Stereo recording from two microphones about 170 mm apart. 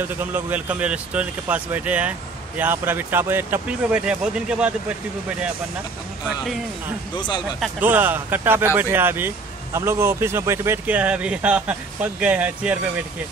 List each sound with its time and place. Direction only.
0.2 s speech: 10° right (ahead or behind)
7.2 s speech: 25° left (ahead or behind)
7.8 s speech: 10° right (ahead or behind)